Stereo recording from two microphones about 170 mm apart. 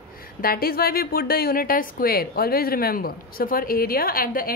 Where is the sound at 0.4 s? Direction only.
60° left (ahead or behind).